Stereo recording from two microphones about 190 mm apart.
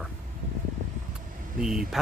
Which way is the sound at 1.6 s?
5° right (ahead or behind).